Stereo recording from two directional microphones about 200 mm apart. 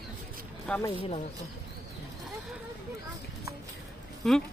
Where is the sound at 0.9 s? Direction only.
25° left (ahead or behind).